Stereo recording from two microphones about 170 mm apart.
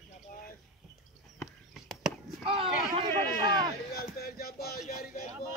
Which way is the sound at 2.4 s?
35° right (ahead or behind).